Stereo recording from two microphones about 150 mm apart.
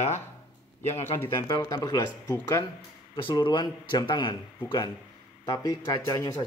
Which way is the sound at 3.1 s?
35° left (ahead or behind).